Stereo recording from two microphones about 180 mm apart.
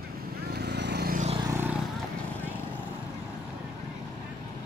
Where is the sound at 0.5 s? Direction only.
65° right (ahead or behind).